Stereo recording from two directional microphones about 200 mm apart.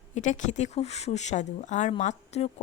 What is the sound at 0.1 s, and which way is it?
Speech, 35° left (ahead or behind).